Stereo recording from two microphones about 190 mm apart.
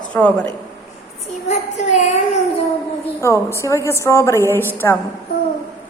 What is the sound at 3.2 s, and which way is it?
A woman's voice, 15° left (ahead or behind).